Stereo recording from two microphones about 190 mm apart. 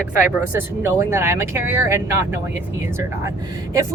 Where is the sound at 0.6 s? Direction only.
10° right (ahead or behind).